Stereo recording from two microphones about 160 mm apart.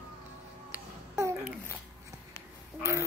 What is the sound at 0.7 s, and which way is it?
Babbling, 15° right (ahead or behind).